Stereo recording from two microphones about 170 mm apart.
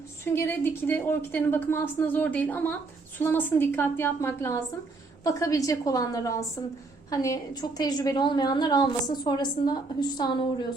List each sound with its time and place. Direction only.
0.3 s a woman's voice: 10° left (ahead or behind)